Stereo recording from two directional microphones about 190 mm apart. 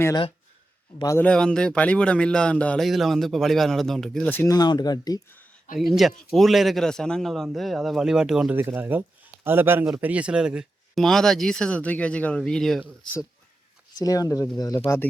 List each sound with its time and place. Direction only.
0.0 s a man's voice: 20° left (ahead or behind)
1.2 s a man's voice: 5° left (ahead or behind); by 5.4 s 20° left (ahead or behind)
5.7 s a man's voice: centre (ahead or behind)
13.9 s speech: 20° left (ahead or behind)